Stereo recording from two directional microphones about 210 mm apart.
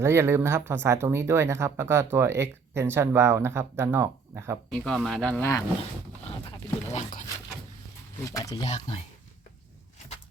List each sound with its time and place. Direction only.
0.0 s speech: 10° right (ahead or behind)
4.7 s speech: centre (ahead or behind)
8.2 s speech: 15° left (ahead or behind)